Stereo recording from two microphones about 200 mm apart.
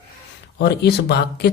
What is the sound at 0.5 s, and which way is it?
Speech, 55° left (ahead or behind).